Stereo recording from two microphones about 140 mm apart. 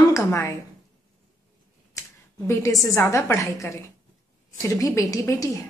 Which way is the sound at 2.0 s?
20° left (ahead or behind).